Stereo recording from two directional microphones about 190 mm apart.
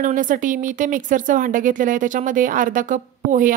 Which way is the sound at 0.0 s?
45° right (ahead or behind).